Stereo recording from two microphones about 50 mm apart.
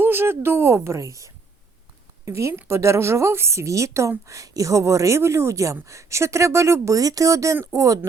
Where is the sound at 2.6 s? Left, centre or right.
Right.